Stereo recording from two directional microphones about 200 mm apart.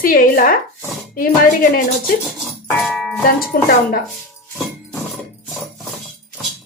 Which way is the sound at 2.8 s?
Centre (ahead or behind).